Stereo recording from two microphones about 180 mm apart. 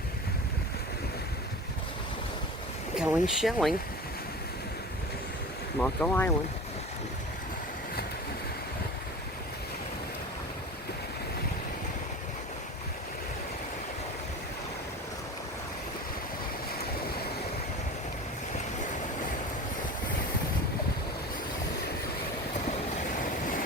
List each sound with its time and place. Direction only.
2.9 s speech: 5° right (ahead or behind)
5.8 s speech: 10° left (ahead or behind)
23.2 s vehicle: 50° left (ahead or behind)